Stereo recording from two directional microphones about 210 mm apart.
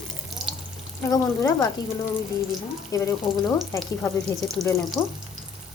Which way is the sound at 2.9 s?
15° left (ahead or behind).